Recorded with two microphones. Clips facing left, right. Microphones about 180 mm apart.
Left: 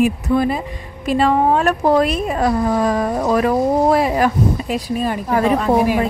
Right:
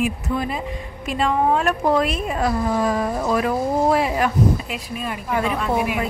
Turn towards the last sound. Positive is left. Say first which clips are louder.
# left 6 dB
turn(degrees=35)  # may be behind; listen again after turning